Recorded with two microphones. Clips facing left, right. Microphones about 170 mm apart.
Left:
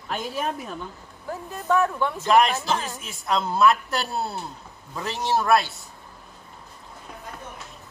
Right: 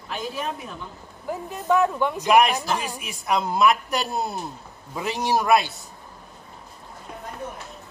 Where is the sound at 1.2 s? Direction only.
15° right (ahead or behind).